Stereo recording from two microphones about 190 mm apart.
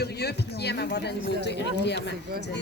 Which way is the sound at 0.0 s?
60° left (ahead or behind).